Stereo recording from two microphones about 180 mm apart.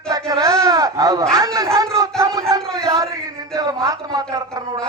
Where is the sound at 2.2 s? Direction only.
20° right (ahead or behind).